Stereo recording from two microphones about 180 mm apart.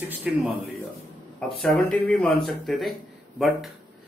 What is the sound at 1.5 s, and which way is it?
Speech, centre (ahead or behind).